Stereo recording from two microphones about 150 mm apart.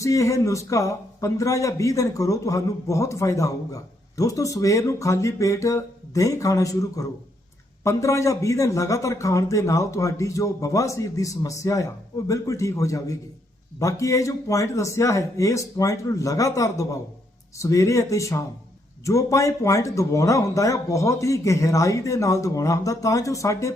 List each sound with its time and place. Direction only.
0.0 s a man's voice: 20° left (ahead or behind)